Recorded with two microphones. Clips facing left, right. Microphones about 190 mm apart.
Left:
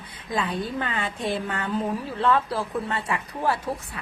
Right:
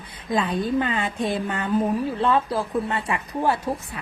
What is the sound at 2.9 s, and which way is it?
Speech, 20° right (ahead or behind).